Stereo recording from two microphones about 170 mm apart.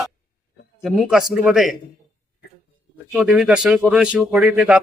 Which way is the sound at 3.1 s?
5° right (ahead or behind).